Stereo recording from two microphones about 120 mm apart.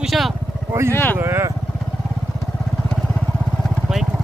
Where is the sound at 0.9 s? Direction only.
15° left (ahead or behind).